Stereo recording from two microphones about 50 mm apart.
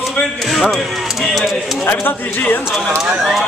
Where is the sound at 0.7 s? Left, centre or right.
Centre.